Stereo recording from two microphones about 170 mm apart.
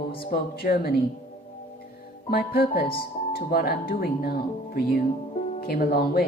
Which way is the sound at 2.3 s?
65° left (ahead or behind).